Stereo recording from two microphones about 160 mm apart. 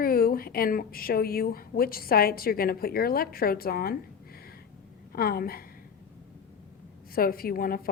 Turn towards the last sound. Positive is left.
turn(degrees=65)  # may be behind; listen again after turning